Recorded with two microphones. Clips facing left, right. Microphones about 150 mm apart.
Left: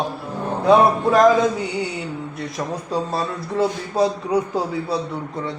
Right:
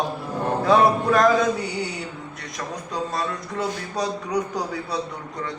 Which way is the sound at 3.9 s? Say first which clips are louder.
Left 6 dB; 30° left (ahead or behind).